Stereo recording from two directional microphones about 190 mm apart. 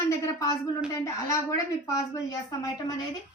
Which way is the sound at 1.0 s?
15° left (ahead or behind).